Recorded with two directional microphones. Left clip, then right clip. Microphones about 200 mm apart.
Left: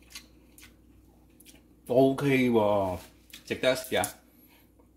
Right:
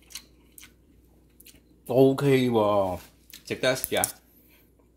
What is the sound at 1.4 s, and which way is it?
Speech, 25° right (ahead or behind).